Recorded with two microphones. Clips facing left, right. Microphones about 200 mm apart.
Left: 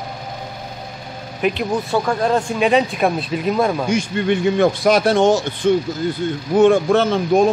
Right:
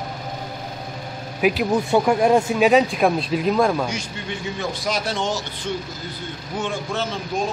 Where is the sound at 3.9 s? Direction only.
60° left (ahead or behind).